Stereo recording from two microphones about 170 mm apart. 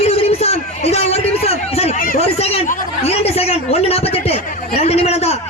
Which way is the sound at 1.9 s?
55° left (ahead or behind).